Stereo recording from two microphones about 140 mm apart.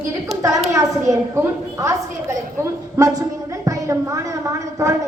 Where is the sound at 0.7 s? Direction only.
25° right (ahead or behind).